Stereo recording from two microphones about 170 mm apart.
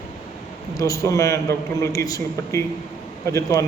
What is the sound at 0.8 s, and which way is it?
A man's voice, 20° left (ahead or behind).